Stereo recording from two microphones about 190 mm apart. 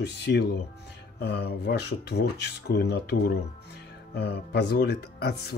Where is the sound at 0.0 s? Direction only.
65° left (ahead or behind).